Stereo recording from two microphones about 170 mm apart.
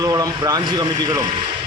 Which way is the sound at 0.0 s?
20° right (ahead or behind).